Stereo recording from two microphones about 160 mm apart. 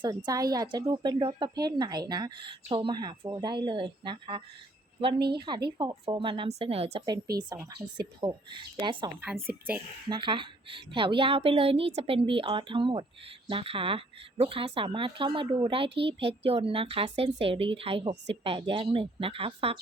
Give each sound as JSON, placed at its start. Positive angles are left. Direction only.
{"t": 0.0, "sound": "a woman's voice", "side_deg": -25}
{"t": 7.3, "sound": "speech", "side_deg": -20}
{"t": 9.2, "sound": "a woman's voice", "side_deg": -10}
{"t": 10.1, "sound": "a woman's voice", "side_deg": -30}